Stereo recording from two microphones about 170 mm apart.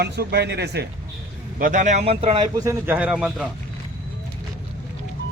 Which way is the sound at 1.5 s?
50° right (ahead or behind).